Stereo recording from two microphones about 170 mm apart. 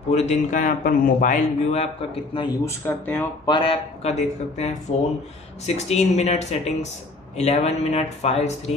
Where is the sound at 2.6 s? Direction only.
15° left (ahead or behind).